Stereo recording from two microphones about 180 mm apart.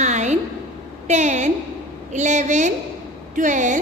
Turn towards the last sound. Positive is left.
turn(degrees=-45)  # may be behind; listen again after turning